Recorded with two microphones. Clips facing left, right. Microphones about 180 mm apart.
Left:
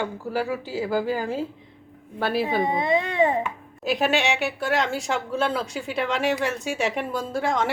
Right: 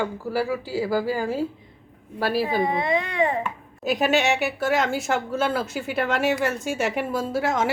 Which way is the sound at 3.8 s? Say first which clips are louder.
Right 2 dB; centre (ahead or behind).